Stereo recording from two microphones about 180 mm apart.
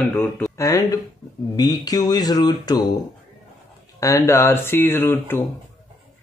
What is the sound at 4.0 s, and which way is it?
Speech, 15° left (ahead or behind).